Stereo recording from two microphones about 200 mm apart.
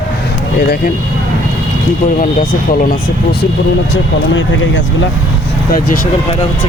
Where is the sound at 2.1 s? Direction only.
45° left (ahead or behind).